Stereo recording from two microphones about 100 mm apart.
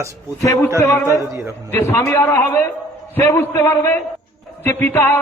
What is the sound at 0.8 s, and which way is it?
A man's voice, 25° left (ahead or behind).